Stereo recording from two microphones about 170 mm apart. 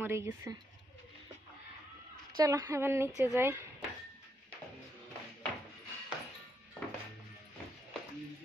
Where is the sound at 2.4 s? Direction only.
20° right (ahead or behind).